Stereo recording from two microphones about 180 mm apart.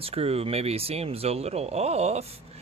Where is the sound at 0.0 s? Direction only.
35° right (ahead or behind).